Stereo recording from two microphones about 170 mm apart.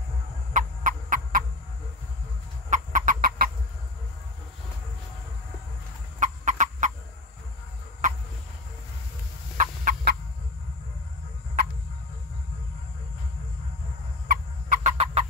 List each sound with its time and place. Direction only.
0.5 s fowl: 50° right (ahead or behind)
2.7 s chicken: 50° right (ahead or behind)
6.1 s chicken: 45° right (ahead or behind)
9.6 s fowl: 55° right (ahead or behind)
14.2 s fowl: 50° right (ahead or behind)